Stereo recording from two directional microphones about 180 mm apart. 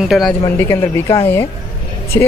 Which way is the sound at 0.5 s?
15° left (ahead or behind).